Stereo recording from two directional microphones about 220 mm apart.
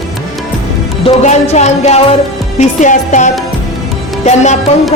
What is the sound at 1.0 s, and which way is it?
A woman's voice, 30° left (ahead or behind).